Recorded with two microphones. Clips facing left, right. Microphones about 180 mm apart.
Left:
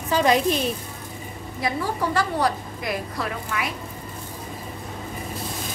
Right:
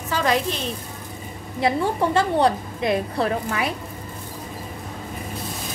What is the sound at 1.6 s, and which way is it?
A woman's voice, 25° right (ahead or behind).